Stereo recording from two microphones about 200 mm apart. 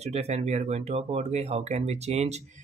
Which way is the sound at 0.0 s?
35° right (ahead or behind).